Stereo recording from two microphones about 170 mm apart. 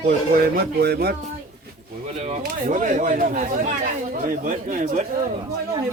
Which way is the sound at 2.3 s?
45° right (ahead or behind).